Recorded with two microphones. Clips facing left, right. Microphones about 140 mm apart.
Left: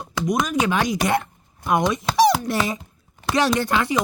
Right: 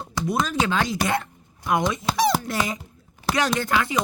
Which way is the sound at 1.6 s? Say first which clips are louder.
Left 2 dB; 20° left (ahead or behind).